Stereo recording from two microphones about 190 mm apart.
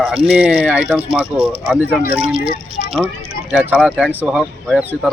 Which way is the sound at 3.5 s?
5° right (ahead or behind).